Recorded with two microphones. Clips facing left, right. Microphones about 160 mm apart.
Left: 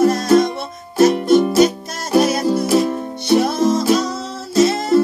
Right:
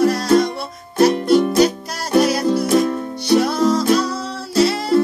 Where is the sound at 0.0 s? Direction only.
20° left (ahead or behind).